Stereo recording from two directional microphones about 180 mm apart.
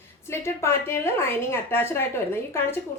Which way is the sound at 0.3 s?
15° left (ahead or behind).